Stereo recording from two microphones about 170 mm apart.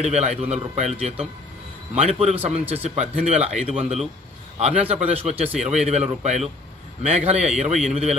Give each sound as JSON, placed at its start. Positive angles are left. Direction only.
{"t": 0.0, "sound": "speech", "side_deg": -40}